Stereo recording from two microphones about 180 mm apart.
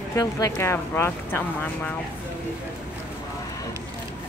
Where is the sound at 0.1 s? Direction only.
20° left (ahead or behind).